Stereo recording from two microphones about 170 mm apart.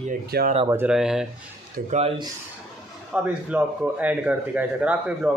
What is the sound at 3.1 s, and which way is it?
Speech, 5° right (ahead or behind).